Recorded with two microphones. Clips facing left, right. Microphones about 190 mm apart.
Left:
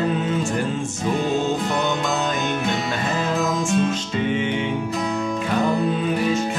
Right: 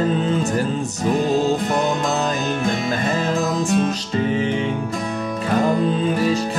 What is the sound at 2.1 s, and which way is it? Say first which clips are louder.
Music: right 2 dB; 35° right (ahead or behind).